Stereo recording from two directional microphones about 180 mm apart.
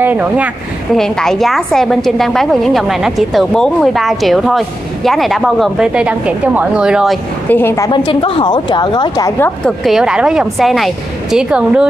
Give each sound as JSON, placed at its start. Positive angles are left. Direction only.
{"t": 0.0, "sound": "speech", "side_deg": -10}
{"t": 0.9, "sound": "a woman's voice", "side_deg": 5}
{"t": 7.4, "sound": "a woman's voice", "side_deg": 10}
{"t": 9.7, "sound": "a woman's voice", "side_deg": 0}